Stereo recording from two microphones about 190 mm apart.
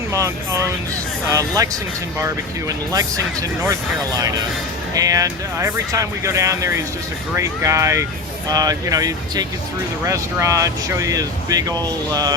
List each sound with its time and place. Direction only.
0.1 s speech: 15° right (ahead or behind)